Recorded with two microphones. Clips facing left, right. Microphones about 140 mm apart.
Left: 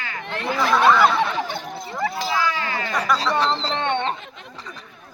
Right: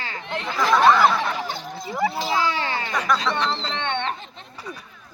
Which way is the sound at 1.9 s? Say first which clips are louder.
Right 2 dB; 10° right (ahead or behind).